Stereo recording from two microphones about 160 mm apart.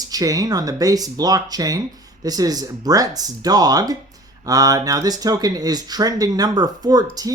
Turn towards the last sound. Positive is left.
turn(degrees=-25)  # may be behind; listen again after turning